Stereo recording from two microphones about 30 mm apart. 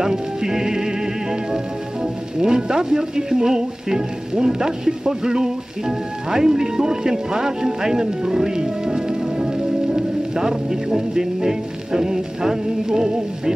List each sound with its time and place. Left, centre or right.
0.0 s music: centre
2.4 s speech: right